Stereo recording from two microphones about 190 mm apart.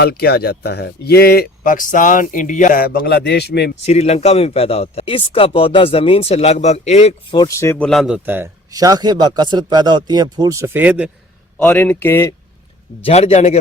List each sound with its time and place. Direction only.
0.0 s speech: 55° left (ahead or behind)
3.8 s speech: 35° left (ahead or behind)
7.3 s speech: 15° left (ahead or behind)
7.9 s a man's voice: centre (ahead or behind)
11.6 s speech: 10° left (ahead or behind)
13.1 s speech: 35° left (ahead or behind)